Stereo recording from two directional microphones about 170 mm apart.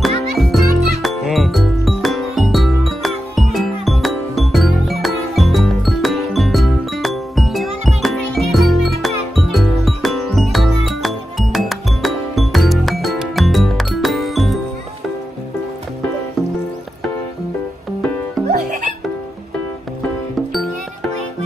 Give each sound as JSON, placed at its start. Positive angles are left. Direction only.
{"t": 0.0, "sound": "music", "side_deg": 0}
{"t": 18.5, "sound": "music", "side_deg": -50}